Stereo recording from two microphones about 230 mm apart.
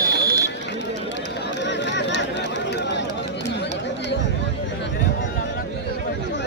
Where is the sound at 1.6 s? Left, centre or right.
Left.